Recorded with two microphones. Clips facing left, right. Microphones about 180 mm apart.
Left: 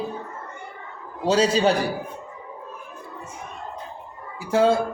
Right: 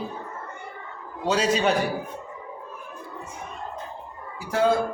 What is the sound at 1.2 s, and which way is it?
Speech, 30° left (ahead or behind).